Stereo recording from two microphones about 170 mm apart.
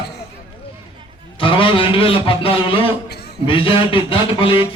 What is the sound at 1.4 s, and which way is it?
A man's voice, 30° left (ahead or behind).